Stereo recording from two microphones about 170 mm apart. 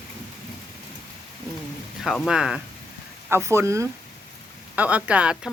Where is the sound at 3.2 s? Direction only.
15° right (ahead or behind).